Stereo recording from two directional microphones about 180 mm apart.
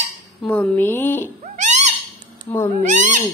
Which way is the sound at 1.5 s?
40° right (ahead or behind).